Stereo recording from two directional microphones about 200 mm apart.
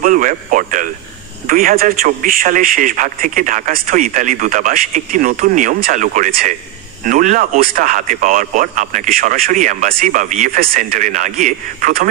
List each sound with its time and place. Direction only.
0.0 s speech: 40° right (ahead or behind)